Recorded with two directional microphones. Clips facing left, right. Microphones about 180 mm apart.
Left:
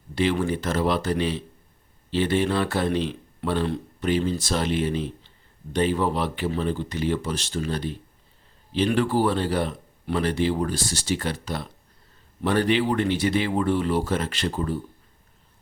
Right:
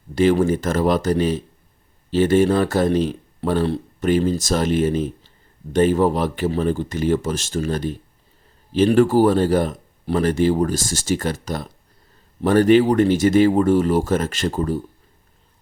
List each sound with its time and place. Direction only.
0.1 s speech: 45° right (ahead or behind)